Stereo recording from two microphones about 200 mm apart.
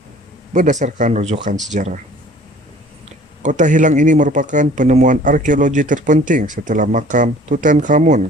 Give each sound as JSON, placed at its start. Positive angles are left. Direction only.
{"t": 0.5, "sound": "speech", "side_deg": -40}
{"t": 3.4, "sound": "speech", "side_deg": -40}